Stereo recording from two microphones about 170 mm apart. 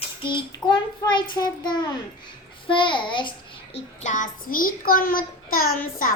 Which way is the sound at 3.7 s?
45° left (ahead or behind).